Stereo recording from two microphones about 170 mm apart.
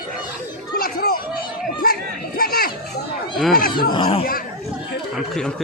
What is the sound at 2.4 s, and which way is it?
Children playing, 60° left (ahead or behind).